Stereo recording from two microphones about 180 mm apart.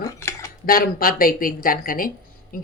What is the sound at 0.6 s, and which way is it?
Speech, 55° left (ahead or behind).